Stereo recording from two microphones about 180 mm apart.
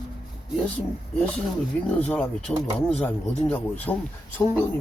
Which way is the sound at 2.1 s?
5° left (ahead or behind).